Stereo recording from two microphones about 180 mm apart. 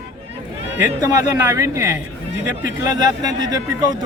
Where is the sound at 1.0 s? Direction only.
20° right (ahead or behind).